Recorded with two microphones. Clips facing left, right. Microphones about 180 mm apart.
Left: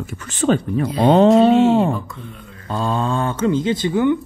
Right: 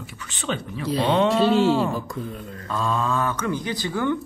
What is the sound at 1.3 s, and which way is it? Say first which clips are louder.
Speech: left 6 dB; 35° right (ahead or behind).